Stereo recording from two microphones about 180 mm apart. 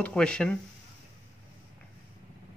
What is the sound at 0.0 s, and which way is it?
Speech, 5° left (ahead or behind).